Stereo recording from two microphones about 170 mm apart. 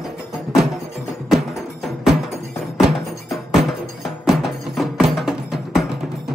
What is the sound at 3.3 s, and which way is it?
Music, centre (ahead or behind).